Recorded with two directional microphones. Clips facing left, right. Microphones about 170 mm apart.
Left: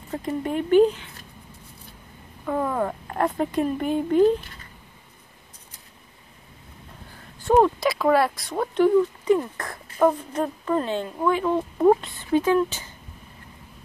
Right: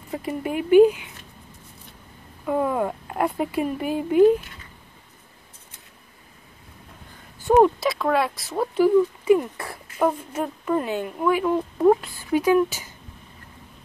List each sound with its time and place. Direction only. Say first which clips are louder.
0.1 s speech: left 1 dB; 10° right (ahead or behind)
2.4 s speech: right 2 dB; 10° right (ahead or behind)
7.5 s speech: right 1 dB; 5° right (ahead or behind)